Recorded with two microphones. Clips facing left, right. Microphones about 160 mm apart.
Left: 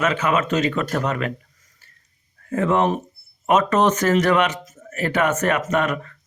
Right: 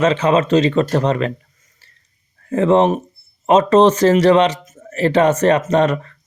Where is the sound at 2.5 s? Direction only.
25° right (ahead or behind).